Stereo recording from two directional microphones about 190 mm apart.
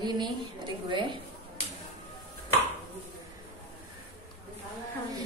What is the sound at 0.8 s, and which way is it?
Speech, 25° right (ahead or behind).